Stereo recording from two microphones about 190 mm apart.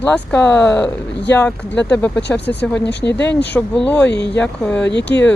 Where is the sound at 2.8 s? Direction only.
65° left (ahead or behind).